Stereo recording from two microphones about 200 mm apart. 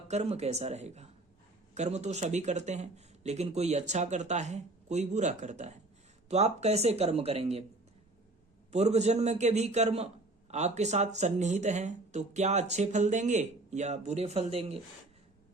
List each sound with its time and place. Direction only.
0.1 s speech: 35° right (ahead or behind)
8.7 s speech: 35° right (ahead or behind)